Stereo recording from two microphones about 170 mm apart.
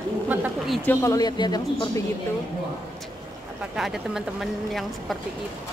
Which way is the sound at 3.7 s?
Centre (ahead or behind).